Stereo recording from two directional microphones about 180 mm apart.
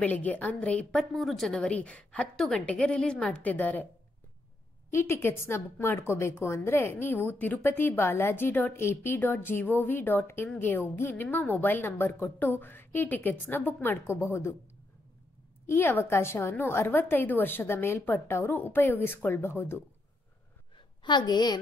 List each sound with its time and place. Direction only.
0.0 s a woman's voice: 10° left (ahead or behind)
4.9 s a woman's voice: 15° left (ahead or behind)
15.6 s a woman's voice: 15° left (ahead or behind)
21.0 s a woman's voice: 25° left (ahead or behind)